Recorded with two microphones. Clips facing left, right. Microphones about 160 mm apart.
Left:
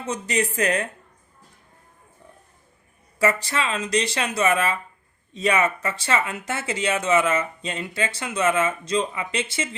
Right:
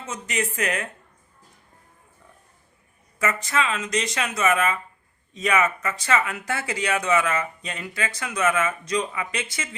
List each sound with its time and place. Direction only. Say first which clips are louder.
0.1 s speech: left 4 dB; 35° left (ahead or behind)
3.2 s speech: left 2 dB; 35° left (ahead or behind)